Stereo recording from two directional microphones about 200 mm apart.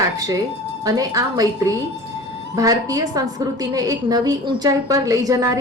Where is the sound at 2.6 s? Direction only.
20° right (ahead or behind).